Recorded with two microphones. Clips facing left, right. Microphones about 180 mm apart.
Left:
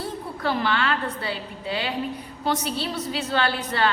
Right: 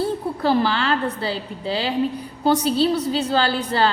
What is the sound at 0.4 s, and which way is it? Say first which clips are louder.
A woman's voice: right 4 dB; 35° right (ahead or behind).